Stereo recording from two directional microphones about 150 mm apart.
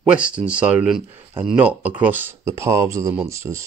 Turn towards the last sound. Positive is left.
turn(degrees=-20)  # may be behind; listen again after turning